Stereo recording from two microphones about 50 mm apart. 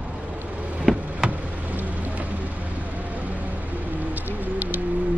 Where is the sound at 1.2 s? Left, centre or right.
Right.